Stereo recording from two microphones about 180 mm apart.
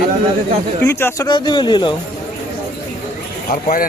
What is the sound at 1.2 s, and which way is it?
Speech, 25° left (ahead or behind).